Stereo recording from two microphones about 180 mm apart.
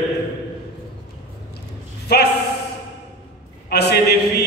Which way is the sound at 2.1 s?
65° left (ahead or behind).